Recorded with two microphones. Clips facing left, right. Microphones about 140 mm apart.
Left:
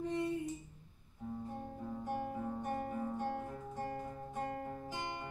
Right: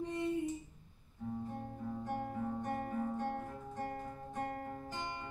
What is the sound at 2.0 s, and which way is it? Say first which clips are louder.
Guitar: even; 15° left (ahead or behind).